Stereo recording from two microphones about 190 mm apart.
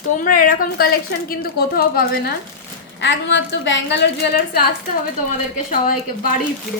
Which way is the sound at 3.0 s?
70° left (ahead or behind).